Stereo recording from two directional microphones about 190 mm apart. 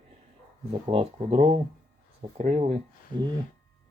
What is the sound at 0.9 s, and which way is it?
Speech, 30° right (ahead or behind).